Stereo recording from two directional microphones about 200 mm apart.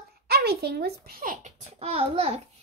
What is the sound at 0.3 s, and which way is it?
A child's voice, 50° right (ahead or behind).